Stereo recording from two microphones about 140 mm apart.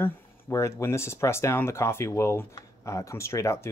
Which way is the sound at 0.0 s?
20° left (ahead or behind).